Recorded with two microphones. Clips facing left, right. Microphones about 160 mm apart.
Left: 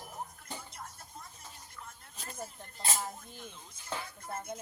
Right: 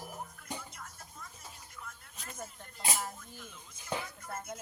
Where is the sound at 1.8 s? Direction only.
35° left (ahead or behind).